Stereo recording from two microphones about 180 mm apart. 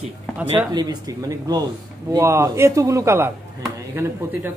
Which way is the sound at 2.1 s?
15° right (ahead or behind).